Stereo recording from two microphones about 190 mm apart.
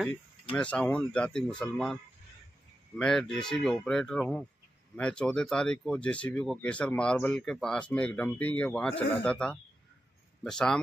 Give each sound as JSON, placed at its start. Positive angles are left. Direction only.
{"t": 0.0, "sound": "speech", "side_deg": 5}
{"t": 3.0, "sound": "speech", "side_deg": 5}